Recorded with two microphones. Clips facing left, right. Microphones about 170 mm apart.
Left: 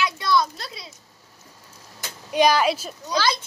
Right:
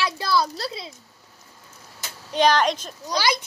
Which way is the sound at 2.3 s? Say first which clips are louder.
Left 1 dB; 10° left (ahead or behind).